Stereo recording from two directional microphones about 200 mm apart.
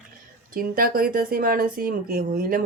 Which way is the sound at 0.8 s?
45° right (ahead or behind).